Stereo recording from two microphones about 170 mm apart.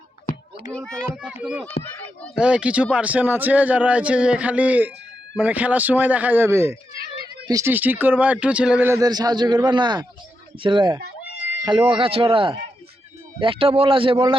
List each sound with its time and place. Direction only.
0.7 s a child's voice: 5° left (ahead or behind)
1.1 s a man's voice: 5° right (ahead or behind); by 14.3 s 30° right (ahead or behind)